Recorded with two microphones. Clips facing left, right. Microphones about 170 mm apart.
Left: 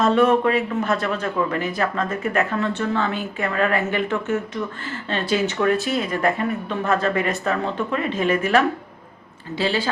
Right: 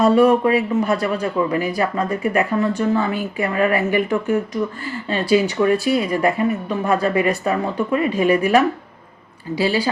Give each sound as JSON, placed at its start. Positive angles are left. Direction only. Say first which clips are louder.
{"t": 0.0, "sound": "speech", "louder": "right 3 dB", "side_deg": -10}